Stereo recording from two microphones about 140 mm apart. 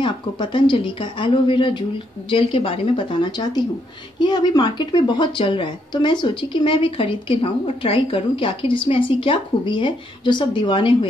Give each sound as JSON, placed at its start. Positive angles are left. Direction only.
{"t": 0.0, "sound": "a woman's voice", "side_deg": 35}